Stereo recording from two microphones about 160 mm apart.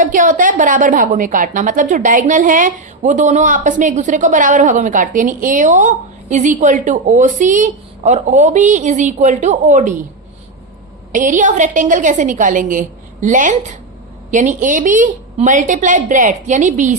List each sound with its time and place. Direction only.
0.0 s a woman's voice: 55° right (ahead or behind)
11.1 s a woman's voice: 55° right (ahead or behind)